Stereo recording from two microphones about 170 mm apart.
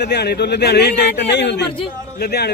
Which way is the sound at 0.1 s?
75° left (ahead or behind).